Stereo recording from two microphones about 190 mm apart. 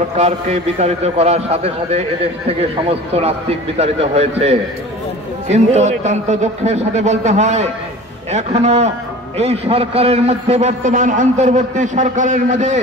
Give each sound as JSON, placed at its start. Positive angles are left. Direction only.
{"t": 0.2, "sound": "a man's voice", "side_deg": -35}